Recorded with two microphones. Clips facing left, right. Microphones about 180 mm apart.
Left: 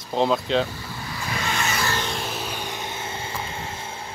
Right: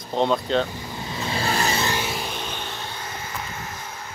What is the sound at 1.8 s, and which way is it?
Vehicle, 10° right (ahead or behind).